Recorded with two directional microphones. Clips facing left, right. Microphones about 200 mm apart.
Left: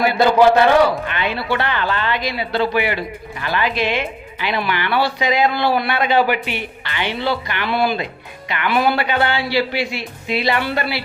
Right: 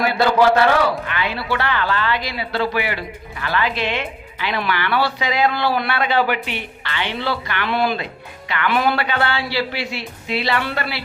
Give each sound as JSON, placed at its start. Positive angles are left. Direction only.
{"t": 0.0, "sound": "a man's voice", "side_deg": 15}
{"t": 7.7, "sound": "speech", "side_deg": 5}
{"t": 9.0, "sound": "speech", "side_deg": 15}